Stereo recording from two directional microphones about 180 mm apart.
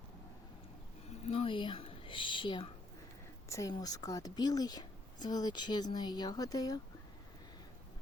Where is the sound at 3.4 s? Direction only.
15° left (ahead or behind).